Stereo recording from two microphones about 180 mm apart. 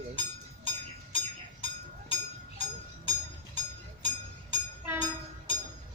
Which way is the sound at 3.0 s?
30° left (ahead or behind).